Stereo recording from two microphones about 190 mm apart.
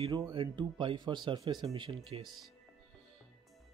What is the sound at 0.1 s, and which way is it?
Speech, 25° right (ahead or behind).